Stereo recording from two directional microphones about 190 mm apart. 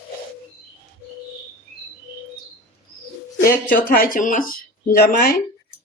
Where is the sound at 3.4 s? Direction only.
45° left (ahead or behind).